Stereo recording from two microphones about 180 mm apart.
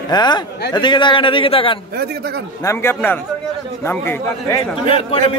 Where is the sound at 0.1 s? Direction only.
25° left (ahead or behind).